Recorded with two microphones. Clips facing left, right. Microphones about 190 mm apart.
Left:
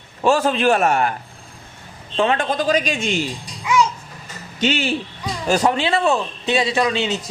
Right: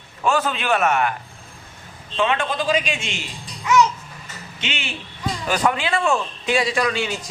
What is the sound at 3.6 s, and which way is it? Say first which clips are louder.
Babbling: right 1 dB; 15° left (ahead or behind).